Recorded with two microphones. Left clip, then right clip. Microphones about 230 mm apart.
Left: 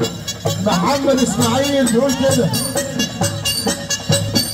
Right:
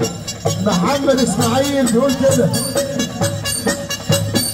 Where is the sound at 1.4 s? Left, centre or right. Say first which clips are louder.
Even; left.